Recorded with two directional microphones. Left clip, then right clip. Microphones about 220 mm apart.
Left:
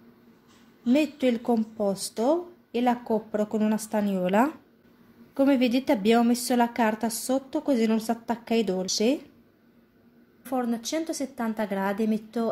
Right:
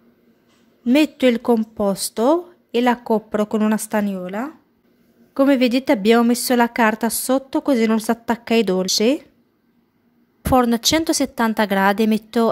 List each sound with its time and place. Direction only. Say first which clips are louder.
0.8 s a woman's voice: right 8 dB; 40° right (ahead or behind)
4.2 s speech: left 4 dB; 5° left (ahead or behind)
5.3 s a woman's voice: right 7 dB; 35° right (ahead or behind)
10.4 s a woman's voice: right 13 dB; 45° right (ahead or behind)